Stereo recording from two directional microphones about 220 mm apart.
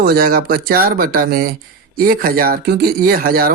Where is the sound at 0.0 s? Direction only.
45° right (ahead or behind).